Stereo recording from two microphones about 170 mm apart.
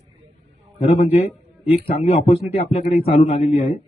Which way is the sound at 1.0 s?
35° left (ahead or behind).